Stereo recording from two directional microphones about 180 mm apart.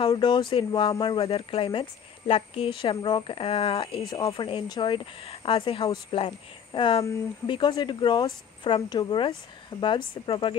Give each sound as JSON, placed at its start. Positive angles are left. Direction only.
{"t": 0.1, "sound": "speech", "side_deg": 25}
{"t": 4.1, "sound": "speech", "side_deg": 20}